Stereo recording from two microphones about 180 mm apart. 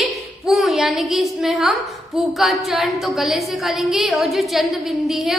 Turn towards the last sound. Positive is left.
turn(degrees=0)  # may be behind; listen again after turning